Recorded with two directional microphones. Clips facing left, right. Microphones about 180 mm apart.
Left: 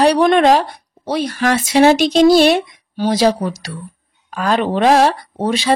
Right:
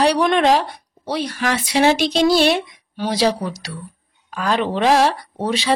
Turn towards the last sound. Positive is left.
turn(degrees=45)  # may be behind; listen again after turning